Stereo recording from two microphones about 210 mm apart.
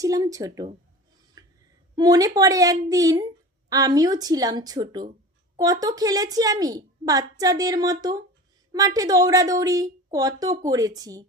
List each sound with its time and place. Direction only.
0.0 s a woman's voice: 15° right (ahead or behind)
1.4 s a sound: 15° right (ahead or behind)
2.0 s a woman's voice: 15° right (ahead or behind)